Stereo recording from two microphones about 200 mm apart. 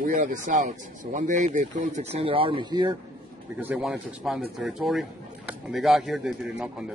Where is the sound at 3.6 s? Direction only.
10° right (ahead or behind).